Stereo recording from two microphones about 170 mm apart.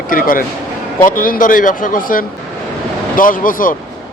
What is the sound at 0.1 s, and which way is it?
Speech, 55° left (ahead or behind).